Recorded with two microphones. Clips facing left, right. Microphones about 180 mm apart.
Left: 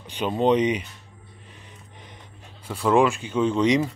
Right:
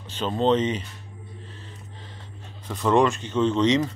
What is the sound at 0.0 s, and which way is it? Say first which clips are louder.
Speech: left 1 dB; 15° left (ahead or behind).